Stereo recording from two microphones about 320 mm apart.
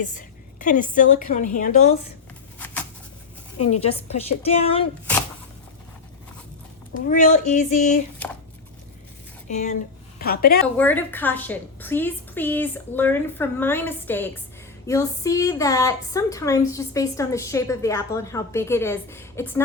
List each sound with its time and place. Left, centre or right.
0.0 s a woman's voice: left
3.7 s a woman's voice: centre
7.1 s a woman's voice: left
9.5 s a woman's voice: left
10.8 s a woman's voice: centre